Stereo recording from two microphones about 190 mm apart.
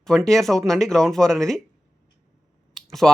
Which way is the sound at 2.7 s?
Centre (ahead or behind).